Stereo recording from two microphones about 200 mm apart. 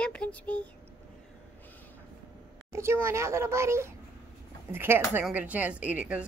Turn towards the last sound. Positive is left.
turn(degrees=-5)  # may be behind; listen again after turning